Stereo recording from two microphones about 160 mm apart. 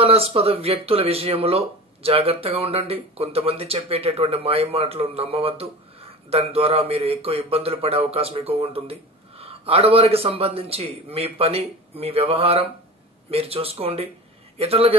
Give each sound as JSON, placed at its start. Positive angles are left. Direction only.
{"t": 0.0, "sound": "speech", "side_deg": -40}